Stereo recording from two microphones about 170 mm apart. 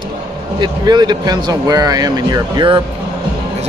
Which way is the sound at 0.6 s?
25° right (ahead or behind).